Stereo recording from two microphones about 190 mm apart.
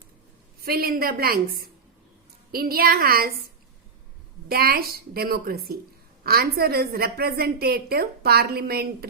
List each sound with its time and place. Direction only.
0.6 s a woman's voice: 50° right (ahead or behind)
4.4 s a woman's voice: 55° right (ahead or behind)